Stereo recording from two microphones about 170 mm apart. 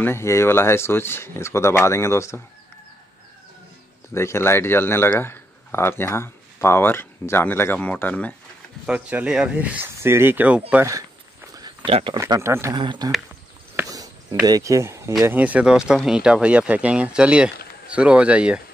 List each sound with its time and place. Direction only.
0.0 s a man's voice: 15° left (ahead or behind)
4.1 s a man's voice: 15° left (ahead or behind)
8.8 s speech: 5° right (ahead or behind)
11.5 s a sound: 25° right (ahead or behind)
12.2 s speech: 15° right (ahead or behind)
12.7 s speech: 25° right (ahead or behind)
13.7 s a sound: 20° right (ahead or behind)
15.2 s speech: 10° right (ahead or behind)